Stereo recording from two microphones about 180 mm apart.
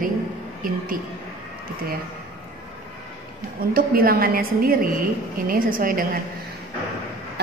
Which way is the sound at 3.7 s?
55° right (ahead or behind).